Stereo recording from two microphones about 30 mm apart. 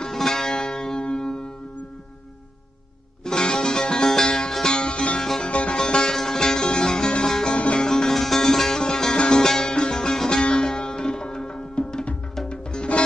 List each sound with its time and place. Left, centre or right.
0.1 s music: centre
0.9 s music: left
3.3 s music: left
5.5 s music: left
5.9 s music: left
6.1 s music: centre
7.5 s music: left
7.8 s music: centre
10.8 s sitar: left
11.7 s music: left